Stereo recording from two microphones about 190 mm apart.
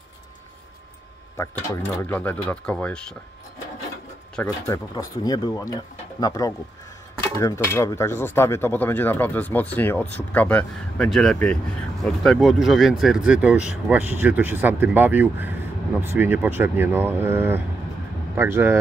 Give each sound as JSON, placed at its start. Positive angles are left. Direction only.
{"t": 2.0, "sound": "speech", "side_deg": 10}
{"t": 4.4, "sound": "speech", "side_deg": 20}